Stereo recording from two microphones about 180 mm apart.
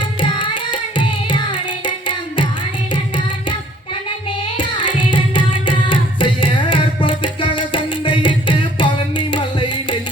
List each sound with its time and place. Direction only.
0.0 s carnatic music: 25° left (ahead or behind)
1.8 s tabla: 25° left (ahead or behind)
4.5 s carnatic music: 30° left (ahead or behind)